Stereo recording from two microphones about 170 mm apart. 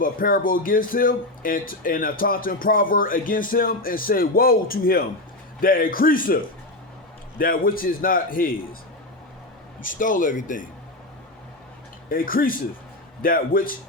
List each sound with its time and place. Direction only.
0.0 s speech: 55° left (ahead or behind)
9.8 s speech: 50° left (ahead or behind)
12.0 s speech: 55° left (ahead or behind)